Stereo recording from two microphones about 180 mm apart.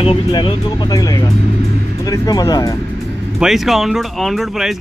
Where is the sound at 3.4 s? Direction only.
Centre (ahead or behind).